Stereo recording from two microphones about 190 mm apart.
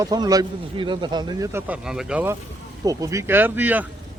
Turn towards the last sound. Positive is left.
turn(degrees=-10)  # may be behind; listen again after turning